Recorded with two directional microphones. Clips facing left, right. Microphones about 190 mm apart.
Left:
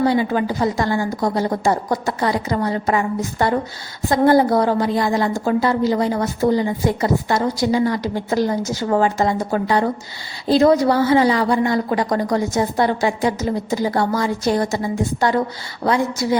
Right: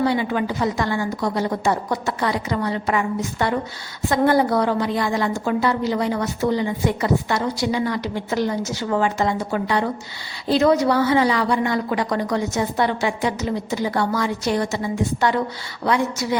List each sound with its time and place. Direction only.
0.0 s a woman's voice: 35° left (ahead or behind)